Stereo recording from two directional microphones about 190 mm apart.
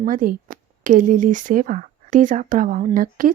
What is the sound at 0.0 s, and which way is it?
Speech, 45° right (ahead or behind).